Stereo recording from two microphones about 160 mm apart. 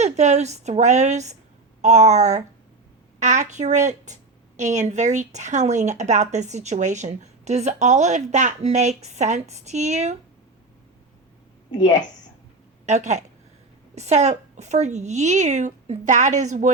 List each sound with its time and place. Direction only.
0.0 s a woman's voice: 45° right (ahead or behind)
11.7 s a woman's voice: 25° left (ahead or behind)
12.8 s a woman's voice: 45° right (ahead or behind)